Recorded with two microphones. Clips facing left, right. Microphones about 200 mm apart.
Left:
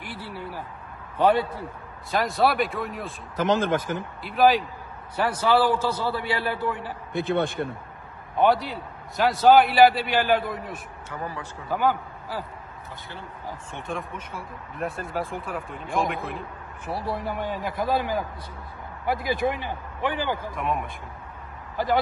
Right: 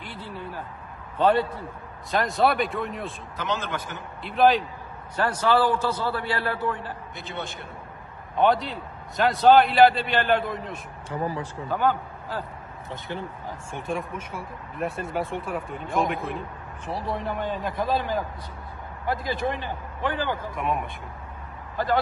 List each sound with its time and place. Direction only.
0.0 s a sound: 10° left (ahead or behind)
1.1 s a man's voice: 10° left (ahead or behind)
3.3 s speech: 45° left (ahead or behind)
4.2 s a man's voice: centre (ahead or behind)
7.2 s speech: 55° left (ahead or behind)
8.4 s a man's voice: 5° left (ahead or behind)
11.7 s a man's voice: 10° left (ahead or behind)
13.7 s a man's voice: centre (ahead or behind)
17.1 s a man's voice: 10° left (ahead or behind)
20.5 s a man's voice: centre (ahead or behind)
21.7 s a man's voice: 15° left (ahead or behind)